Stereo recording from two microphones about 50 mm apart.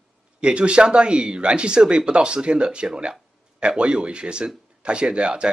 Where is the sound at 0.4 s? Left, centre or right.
Right.